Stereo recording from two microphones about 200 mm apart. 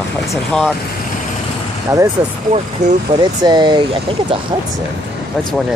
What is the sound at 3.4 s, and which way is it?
Speech, 20° right (ahead or behind).